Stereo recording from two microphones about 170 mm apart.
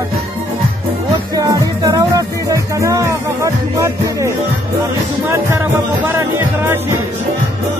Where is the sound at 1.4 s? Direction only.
20° right (ahead or behind).